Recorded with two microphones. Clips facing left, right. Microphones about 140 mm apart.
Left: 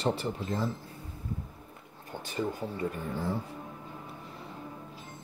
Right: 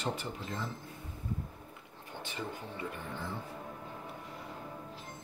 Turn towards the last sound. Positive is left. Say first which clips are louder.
# left 7 dB
turn(degrees=40)  # may be behind; listen again after turning